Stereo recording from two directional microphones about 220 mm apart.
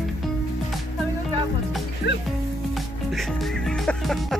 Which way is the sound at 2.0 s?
50° left (ahead or behind).